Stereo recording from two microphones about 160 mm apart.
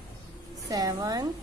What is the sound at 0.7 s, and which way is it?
Speech, 20° right (ahead or behind).